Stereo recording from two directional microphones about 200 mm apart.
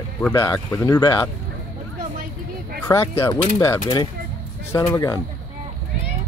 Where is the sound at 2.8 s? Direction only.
15° left (ahead or behind).